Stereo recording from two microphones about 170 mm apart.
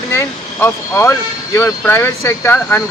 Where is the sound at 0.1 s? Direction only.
15° left (ahead or behind).